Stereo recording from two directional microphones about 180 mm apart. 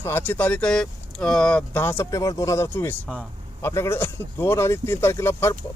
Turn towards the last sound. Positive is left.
turn(degrees=15)  # may be behind; listen again after turning